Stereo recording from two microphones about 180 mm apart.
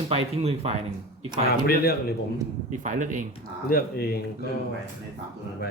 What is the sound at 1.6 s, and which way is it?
Speech, 60° left (ahead or behind).